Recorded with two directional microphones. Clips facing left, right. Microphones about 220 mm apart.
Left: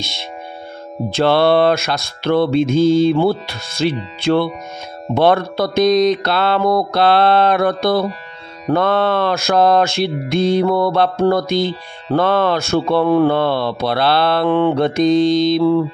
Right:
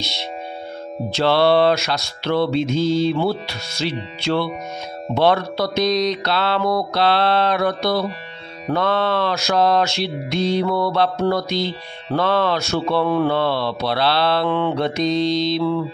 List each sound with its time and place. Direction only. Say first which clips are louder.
0.0 s mantra: even; 50° left (ahead or behind)